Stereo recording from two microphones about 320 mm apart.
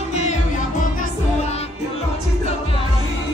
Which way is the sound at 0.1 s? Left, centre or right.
Left.